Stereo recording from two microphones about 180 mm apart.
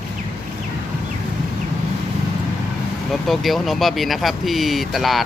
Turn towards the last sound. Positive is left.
turn(degrees=0)  # may be behind; listen again after turning